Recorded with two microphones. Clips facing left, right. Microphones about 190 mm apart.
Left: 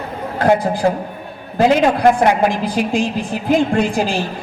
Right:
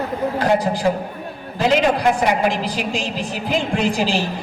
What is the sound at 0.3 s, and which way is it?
A woman's voice, 55° left (ahead or behind).